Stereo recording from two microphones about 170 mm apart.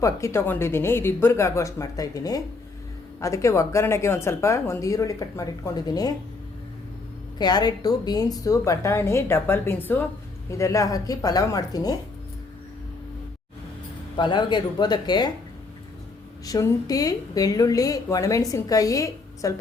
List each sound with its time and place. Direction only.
0.0 s speech: 15° left (ahead or behind)
7.3 s speech: 25° left (ahead or behind)
14.2 s speech: 25° left (ahead or behind)
16.5 s speech: 20° left (ahead or behind)